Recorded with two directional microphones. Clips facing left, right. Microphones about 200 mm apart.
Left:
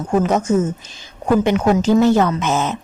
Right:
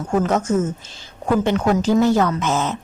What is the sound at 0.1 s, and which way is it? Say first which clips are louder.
Speech: left 2 dB; 15° left (ahead or behind).